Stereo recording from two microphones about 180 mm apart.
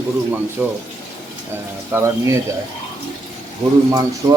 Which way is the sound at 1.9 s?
15° right (ahead or behind).